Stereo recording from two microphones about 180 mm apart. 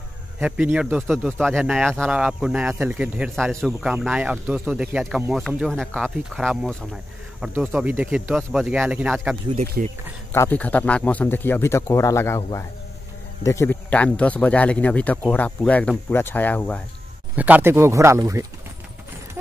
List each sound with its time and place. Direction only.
0.4 s speech: 5° right (ahead or behind)
9.8 s speech: 50° right (ahead or behind)
10.3 s a man's voice: 10° left (ahead or behind)
17.4 s speech: 10° right (ahead or behind)